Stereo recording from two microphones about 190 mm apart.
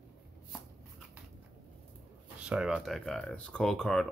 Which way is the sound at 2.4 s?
5° right (ahead or behind).